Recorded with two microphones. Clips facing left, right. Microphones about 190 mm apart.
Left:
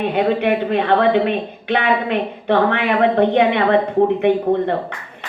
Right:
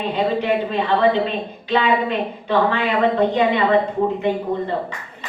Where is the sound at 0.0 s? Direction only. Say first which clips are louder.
Left 4 dB; 60° left (ahead or behind).